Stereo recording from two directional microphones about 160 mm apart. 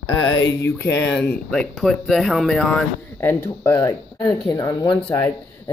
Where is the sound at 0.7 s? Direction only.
10° left (ahead or behind).